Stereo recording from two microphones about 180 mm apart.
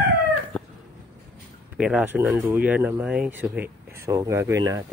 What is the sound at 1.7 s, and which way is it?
Speech, 5° right (ahead or behind).